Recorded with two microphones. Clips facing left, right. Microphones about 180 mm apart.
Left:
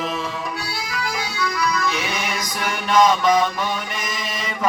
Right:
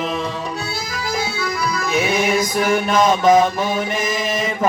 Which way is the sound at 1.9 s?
50° right (ahead or behind).